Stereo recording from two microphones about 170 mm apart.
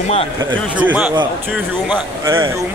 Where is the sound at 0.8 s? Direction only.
10° right (ahead or behind).